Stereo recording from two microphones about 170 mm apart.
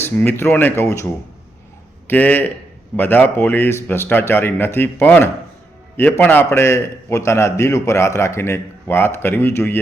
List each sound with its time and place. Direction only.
0.0 s a man's voice: 10° left (ahead or behind)
2.0 s a man's voice: 10° left (ahead or behind)